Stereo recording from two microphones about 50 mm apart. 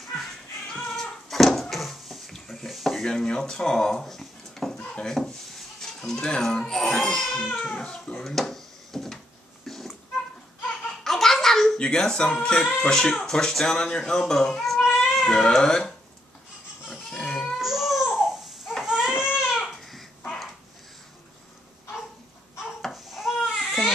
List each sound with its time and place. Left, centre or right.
0.7 s cat: centre
3.1 s speech: centre
5.0 s dishes: centre
6.4 s speech: centre
8.2 s a sound: centre
11.1 s a sound: centre
12.8 s speech: centre
17.1 s baby cry: centre
17.6 s baby cry: centre
19.5 s babbling: centre
22.9 s baby cry: centre